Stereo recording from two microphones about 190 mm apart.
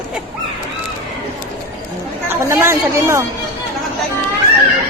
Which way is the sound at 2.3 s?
15° right (ahead or behind).